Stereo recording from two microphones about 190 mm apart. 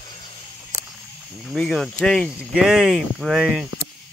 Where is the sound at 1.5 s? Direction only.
Centre (ahead or behind).